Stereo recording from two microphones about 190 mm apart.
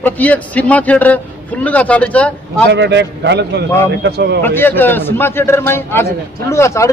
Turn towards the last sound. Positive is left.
turn(degrees=15)  # may be behind; listen again after turning